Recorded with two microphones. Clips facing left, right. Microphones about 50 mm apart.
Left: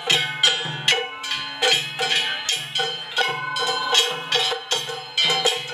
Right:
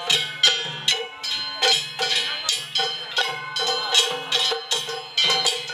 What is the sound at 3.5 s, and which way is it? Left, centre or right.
Music, centre.